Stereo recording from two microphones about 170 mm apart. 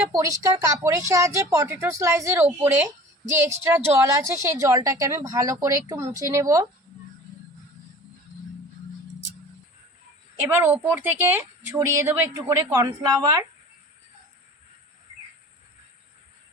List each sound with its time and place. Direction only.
0.1 s a woman's voice: 20° right (ahead or behind)
10.5 s speech: 15° right (ahead or behind)